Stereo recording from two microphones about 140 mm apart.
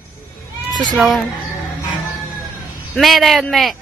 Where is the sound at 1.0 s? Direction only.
Centre (ahead or behind).